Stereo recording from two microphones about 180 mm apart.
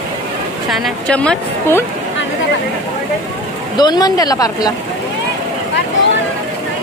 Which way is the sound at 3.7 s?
25° left (ahead or behind).